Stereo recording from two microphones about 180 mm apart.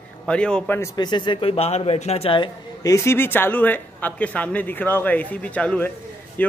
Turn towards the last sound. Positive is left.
turn(degrees=10)  # may be behind; listen again after turning